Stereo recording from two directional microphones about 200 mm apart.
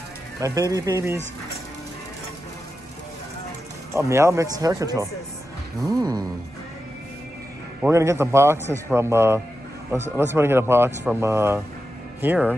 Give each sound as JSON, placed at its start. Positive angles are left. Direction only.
{"t": 0.4, "sound": "a man's voice", "side_deg": -15}
{"t": 3.9, "sound": "a man's voice", "side_deg": -15}
{"t": 5.9, "sound": "music", "side_deg": -20}
{"t": 7.8, "sound": "a man's voice", "side_deg": -15}